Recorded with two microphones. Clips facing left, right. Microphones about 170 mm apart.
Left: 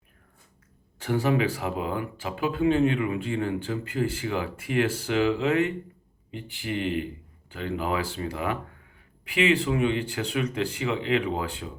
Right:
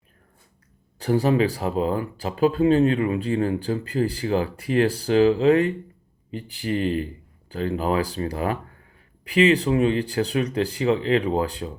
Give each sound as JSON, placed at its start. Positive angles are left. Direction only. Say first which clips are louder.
{"t": 0.9, "sound": "speech", "louder": "right 4 dB", "side_deg": -35}